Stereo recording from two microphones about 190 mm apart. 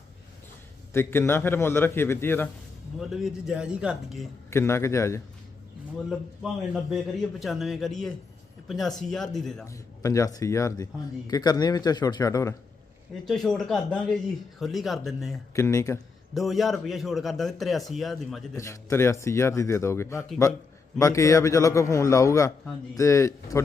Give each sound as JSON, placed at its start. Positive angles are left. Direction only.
{"t": 0.9, "sound": "speech", "side_deg": 10}
{"t": 3.0, "sound": "a man's voice", "side_deg": 0}
{"t": 4.5, "sound": "speech", "side_deg": 15}
{"t": 6.9, "sound": "a man's voice", "side_deg": 0}
{"t": 9.6, "sound": "speech", "side_deg": 15}
{"t": 13.2, "sound": "a man's voice", "side_deg": 0}
{"t": 15.5, "sound": "speech", "side_deg": 15}
{"t": 16.3, "sound": "a man's voice", "side_deg": 0}
{"t": 18.5, "sound": "speech", "side_deg": 15}